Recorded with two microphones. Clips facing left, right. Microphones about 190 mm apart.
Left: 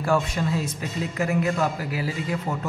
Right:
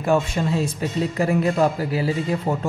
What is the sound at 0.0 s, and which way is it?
A man's voice, 25° right (ahead or behind).